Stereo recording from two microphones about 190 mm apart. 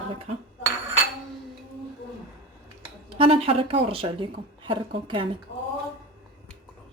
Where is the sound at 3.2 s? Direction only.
30° right (ahead or behind).